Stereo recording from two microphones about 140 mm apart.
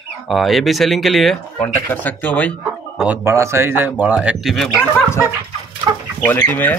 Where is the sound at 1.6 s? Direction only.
15° left (ahead or behind).